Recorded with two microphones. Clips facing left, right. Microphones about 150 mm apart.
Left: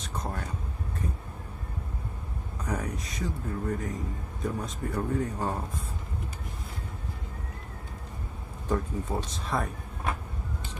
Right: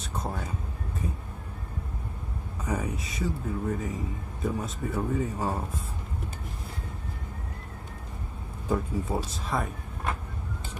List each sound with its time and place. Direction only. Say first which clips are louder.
0.0 s a sound: right 1 dB; 10° right (ahead or behind)
2.6 s speech: right 2 dB; 5° right (ahead or behind)
8.6 s speech: right 1 dB; 10° right (ahead or behind)